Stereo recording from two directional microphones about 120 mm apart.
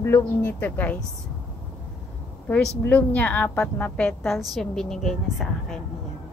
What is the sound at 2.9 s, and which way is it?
A woman's voice, 10° left (ahead or behind).